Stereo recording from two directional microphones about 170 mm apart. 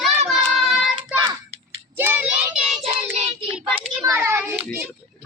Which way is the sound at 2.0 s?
10° right (ahead or behind).